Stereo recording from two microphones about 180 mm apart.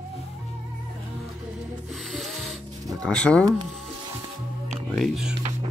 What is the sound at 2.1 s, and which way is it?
Music, centre (ahead or behind).